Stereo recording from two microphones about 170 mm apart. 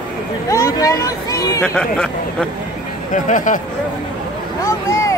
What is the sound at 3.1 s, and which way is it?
Speech, 50° left (ahead or behind).